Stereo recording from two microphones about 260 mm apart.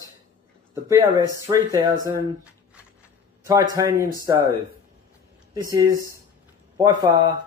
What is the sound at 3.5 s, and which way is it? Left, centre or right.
Speech, centre.